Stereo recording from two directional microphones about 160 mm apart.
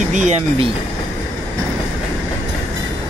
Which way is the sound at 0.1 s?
45° right (ahead or behind).